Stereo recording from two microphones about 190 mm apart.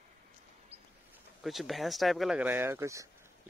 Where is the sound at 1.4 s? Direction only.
Centre (ahead or behind).